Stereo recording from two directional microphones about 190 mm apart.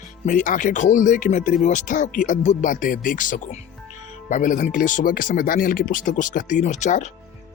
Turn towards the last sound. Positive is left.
turn(degrees=40)  # may be behind; listen again after turning